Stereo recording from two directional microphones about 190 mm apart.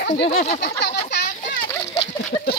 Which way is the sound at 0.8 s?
65° left (ahead or behind).